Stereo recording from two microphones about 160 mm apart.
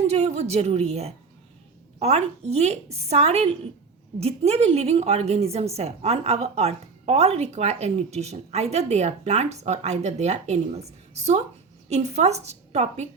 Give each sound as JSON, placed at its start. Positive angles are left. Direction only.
{"t": 0.1, "sound": "a woman's voice", "side_deg": -40}